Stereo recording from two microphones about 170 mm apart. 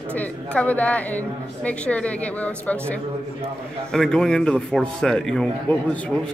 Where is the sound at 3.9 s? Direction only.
5° left (ahead or behind).